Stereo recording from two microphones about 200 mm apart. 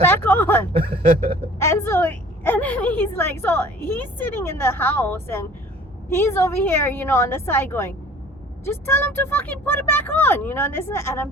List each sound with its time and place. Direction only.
0.0 s a woman's voice: 10° left (ahead or behind)
0.7 s speech: 30° right (ahead or behind)
1.5 s a woman's voice: 15° left (ahead or behind)